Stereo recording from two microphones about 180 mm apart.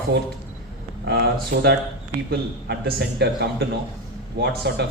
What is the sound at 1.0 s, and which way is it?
A man's voice, 60° right (ahead or behind).